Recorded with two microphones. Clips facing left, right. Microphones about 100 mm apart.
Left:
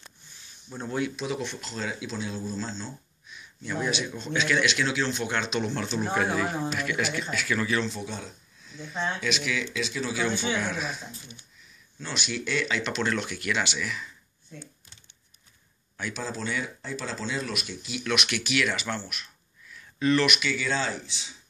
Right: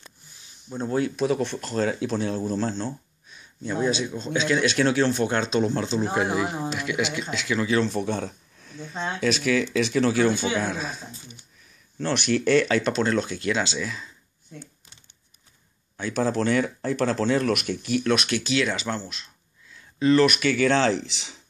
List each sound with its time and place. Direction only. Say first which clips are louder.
0.7 s speech: right 6 dB; 35° right (ahead or behind); by 2.9 s 60° right (ahead or behind)
3.3 s a sound: right 5 dB; 35° right (ahead or behind)
3.7 s speech: right 5 dB; 30° right (ahead or behind)
4.6 s speech: right 6 dB; 45° right (ahead or behind)
5.2 s speech: right 6 dB; 35° right (ahead or behind)
6.0 s speech: right 2 dB; 15° right (ahead or behind)
7.8 s speech: right 8 dB; 55° right (ahead or behind)
9.8 s speech: right 9 dB; 60° right (ahead or behind)
10.5 s speech: right 3 dB; 35° right (ahead or behind)
12.0 s speech: right 10 dB; 55° right (ahead or behind); by 14.1 s 30° right (ahead or behind)
16.1 s speech: right 10 dB; 55° right (ahead or behind)
18.0 s speech: right 1 dB; 35° right (ahead or behind); by 21.4 s 90° right